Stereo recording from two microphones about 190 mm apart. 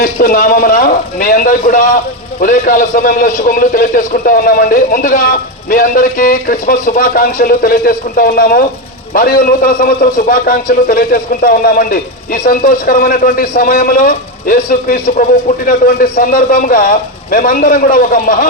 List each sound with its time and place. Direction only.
0.0 s a man's voice: 50° left (ahead or behind)